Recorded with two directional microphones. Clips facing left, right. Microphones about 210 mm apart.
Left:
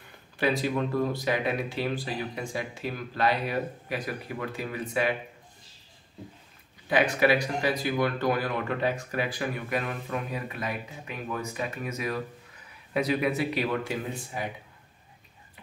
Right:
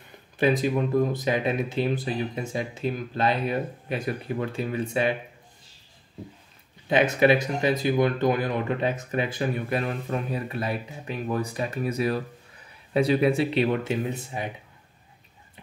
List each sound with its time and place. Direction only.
0.4 s speech: 20° right (ahead or behind)
6.9 s speech: 25° right (ahead or behind)